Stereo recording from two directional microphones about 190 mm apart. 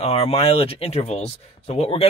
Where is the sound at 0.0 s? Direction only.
30° left (ahead or behind).